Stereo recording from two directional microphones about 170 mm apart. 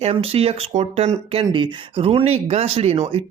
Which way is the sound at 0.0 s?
35° right (ahead or behind).